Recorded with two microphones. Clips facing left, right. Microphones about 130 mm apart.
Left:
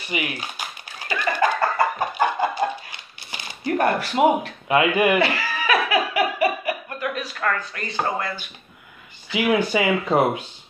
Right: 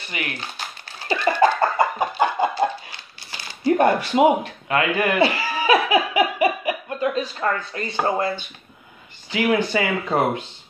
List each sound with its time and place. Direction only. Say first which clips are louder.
0.1 s speech: left 3 dB; 10° left (ahead or behind)
1.0 s a sound: right 4 dB; 30° right (ahead or behind)
2.0 s chicken: right 1 dB; 15° right (ahead or behind)
2.5 s dog: right 2 dB; 20° left (ahead or behind)
3.6 s speech: right 4 dB; 20° right (ahead or behind)
4.6 s speech: left 3 dB; 15° left (ahead or behind)
5.2 s laughter: right 3 dB; 30° right (ahead or behind)
7.9 s speech: right 3 dB; 25° right (ahead or behind)
9.3 s speech: even; 10° left (ahead or behind)